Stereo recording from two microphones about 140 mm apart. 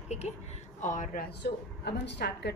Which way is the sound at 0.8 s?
65° left (ahead or behind).